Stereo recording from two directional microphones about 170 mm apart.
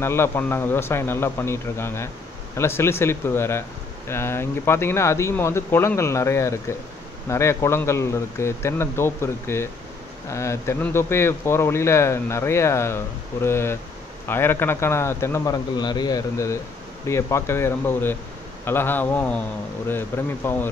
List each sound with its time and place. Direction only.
0.0 s speech: 15° left (ahead or behind)